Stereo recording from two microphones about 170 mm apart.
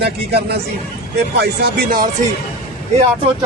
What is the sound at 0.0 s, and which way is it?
Speech, 75° right (ahead or behind).